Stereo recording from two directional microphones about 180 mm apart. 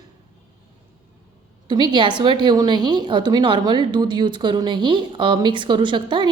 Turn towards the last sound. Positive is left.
turn(degrees=-25)  # may be behind; listen again after turning